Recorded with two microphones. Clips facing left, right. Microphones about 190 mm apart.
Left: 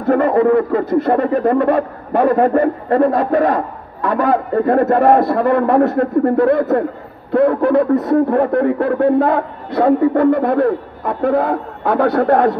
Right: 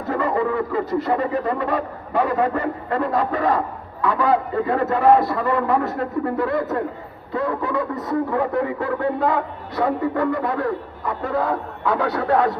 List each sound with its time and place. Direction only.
0.0 s speech: 60° left (ahead or behind)